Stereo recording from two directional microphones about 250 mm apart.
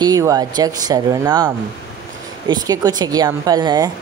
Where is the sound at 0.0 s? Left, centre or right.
Centre.